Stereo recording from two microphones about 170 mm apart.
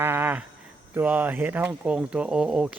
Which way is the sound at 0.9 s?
10° right (ahead or behind).